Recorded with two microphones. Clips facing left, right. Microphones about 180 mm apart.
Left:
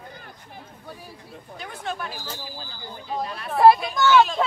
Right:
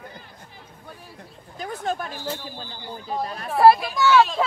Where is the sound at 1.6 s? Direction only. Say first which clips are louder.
Right 5 dB; 40° right (ahead or behind).